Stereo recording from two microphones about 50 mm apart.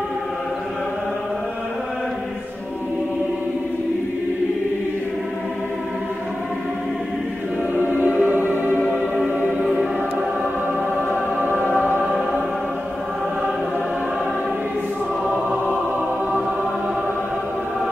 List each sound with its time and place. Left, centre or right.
7.7 s music: right